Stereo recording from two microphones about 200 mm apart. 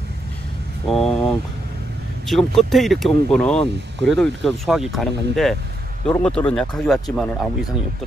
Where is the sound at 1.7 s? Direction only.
55° right (ahead or behind).